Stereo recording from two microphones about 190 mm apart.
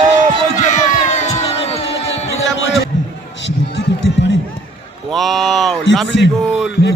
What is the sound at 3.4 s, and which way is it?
Music, 70° left (ahead or behind).